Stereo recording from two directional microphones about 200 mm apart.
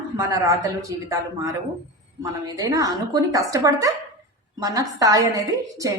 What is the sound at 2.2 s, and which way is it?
Speech, 20° right (ahead or behind).